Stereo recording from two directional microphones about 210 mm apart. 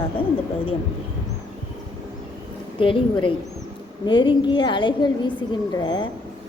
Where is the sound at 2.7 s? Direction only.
25° left (ahead or behind).